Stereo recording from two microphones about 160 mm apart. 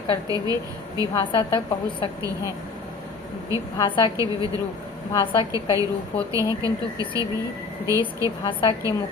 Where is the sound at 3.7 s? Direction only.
30° left (ahead or behind).